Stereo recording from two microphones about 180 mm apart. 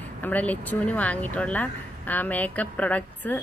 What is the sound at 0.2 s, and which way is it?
Speech, 10° left (ahead or behind).